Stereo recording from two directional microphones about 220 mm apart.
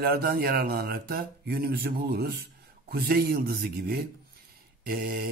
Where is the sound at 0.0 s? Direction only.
45° right (ahead or behind).